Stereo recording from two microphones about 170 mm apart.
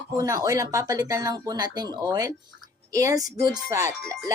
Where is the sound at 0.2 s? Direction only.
20° right (ahead or behind).